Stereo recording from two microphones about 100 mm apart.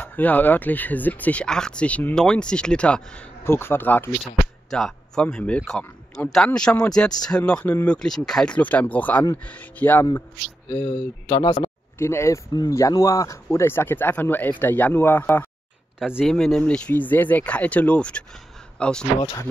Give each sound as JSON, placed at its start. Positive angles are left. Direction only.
{"t": 0.0, "sound": "speech", "side_deg": 15}
{"t": 3.4, "sound": "speech", "side_deg": 25}
{"t": 4.2, "sound": "speech", "side_deg": 5}
{"t": 10.7, "sound": "speech", "side_deg": 45}
{"t": 12.0, "sound": "speech", "side_deg": 25}
{"t": 16.3, "sound": "speech", "side_deg": 5}